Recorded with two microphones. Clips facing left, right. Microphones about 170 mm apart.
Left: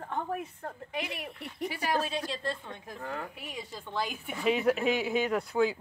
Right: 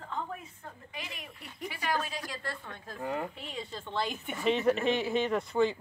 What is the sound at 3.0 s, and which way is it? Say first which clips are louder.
Speech: right 4 dB; 15° right (ahead or behind).